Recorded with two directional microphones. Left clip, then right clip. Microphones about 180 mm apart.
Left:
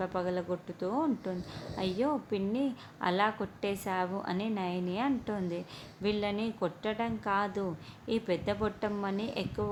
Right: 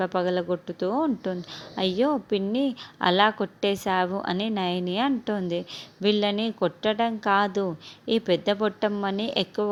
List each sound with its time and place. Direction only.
0.0 s speech: 35° right (ahead or behind)